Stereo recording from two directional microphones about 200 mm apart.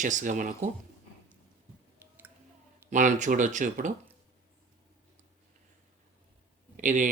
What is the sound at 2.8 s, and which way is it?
Speech, 40° right (ahead or behind).